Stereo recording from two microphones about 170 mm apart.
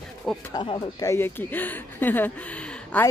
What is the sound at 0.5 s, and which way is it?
Speech, 30° left (ahead or behind).